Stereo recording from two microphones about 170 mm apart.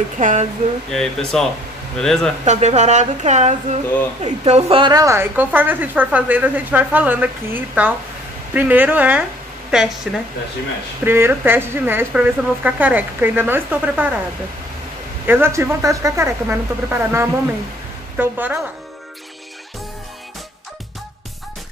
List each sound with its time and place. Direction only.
0.2 s a sound: 45° right (ahead or behind)
0.9 s speech: centre (ahead or behind)
2.4 s speech: 40° right (ahead or behind); by 9.9 s 5° right (ahead or behind)
11.1 s speech: 15° right (ahead or behind)
15.2 s speech: 15° right (ahead or behind)